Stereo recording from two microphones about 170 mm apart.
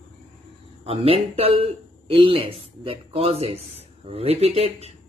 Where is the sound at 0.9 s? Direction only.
35° right (ahead or behind).